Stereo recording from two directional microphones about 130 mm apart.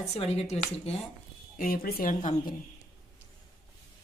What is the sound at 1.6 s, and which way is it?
Speech, 90° left.